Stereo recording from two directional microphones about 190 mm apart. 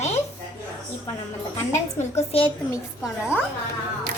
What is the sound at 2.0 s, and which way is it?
Speech, 35° left (ahead or behind).